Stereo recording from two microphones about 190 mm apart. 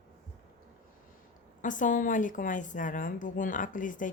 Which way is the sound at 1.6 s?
45° left (ahead or behind).